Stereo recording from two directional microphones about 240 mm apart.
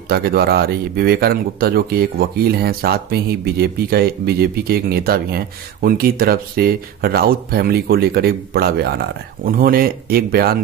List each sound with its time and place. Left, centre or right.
0.1 s speech: right